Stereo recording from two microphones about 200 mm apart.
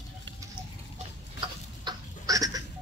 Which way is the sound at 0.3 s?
65° right (ahead or behind).